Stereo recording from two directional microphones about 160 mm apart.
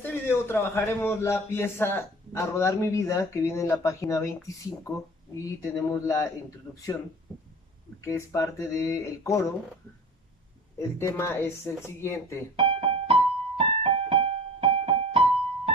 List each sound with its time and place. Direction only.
0.0 s a man's voice: 15° left (ahead or behind)
5.9 s speech: 20° left (ahead or behind)
8.0 s speech: 20° left (ahead or behind)
10.8 s a man's voice: 15° left (ahead or behind)
12.5 s keyboard: 35° right (ahead or behind)